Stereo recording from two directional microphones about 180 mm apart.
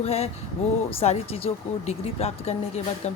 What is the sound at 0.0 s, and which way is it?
Speech, 35° left (ahead or behind).